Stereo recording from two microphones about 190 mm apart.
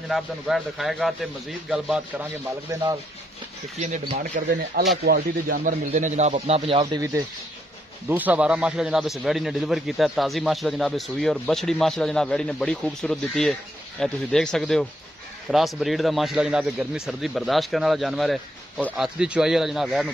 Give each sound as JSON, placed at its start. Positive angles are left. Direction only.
{"t": 0.1, "sound": "a man's voice", "side_deg": 0}
{"t": 3.7, "sound": "a man's voice", "side_deg": -35}
{"t": 4.5, "sound": "speech", "side_deg": -65}
{"t": 5.6, "sound": "a man's voice", "side_deg": -40}
{"t": 7.0, "sound": "a man's voice", "side_deg": -15}